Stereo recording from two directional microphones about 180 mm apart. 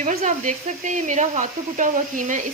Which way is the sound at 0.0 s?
45° right (ahead or behind).